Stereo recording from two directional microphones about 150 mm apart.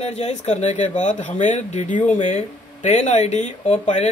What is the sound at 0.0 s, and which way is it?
Speech, 45° left (ahead or behind).